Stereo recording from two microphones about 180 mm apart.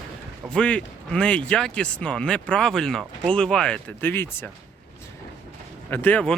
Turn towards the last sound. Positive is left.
turn(degrees=5)  # may be behind; listen again after turning